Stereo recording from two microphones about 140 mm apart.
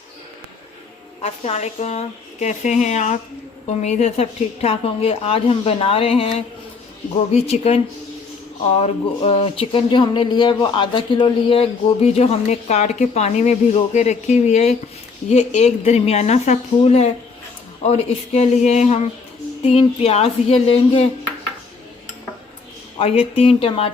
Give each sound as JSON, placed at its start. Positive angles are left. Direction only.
{"t": 1.2, "sound": "speech", "side_deg": 50}
{"t": 9.2, "sound": "speech", "side_deg": 40}
{"t": 23.0, "sound": "speech", "side_deg": 45}